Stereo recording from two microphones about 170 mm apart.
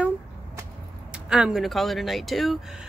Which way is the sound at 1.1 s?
5° right (ahead or behind).